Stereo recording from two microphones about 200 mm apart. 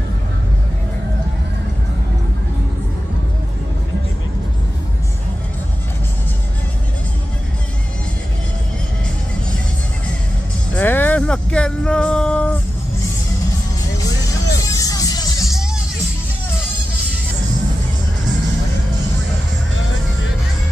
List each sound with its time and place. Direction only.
10.7 s vehicle: 10° left (ahead or behind)
14.6 s music: 20° left (ahead or behind)